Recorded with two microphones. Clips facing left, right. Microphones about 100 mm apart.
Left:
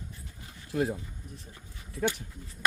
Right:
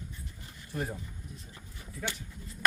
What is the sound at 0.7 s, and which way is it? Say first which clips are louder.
Speech: left 7 dB; 75° left (ahead or behind).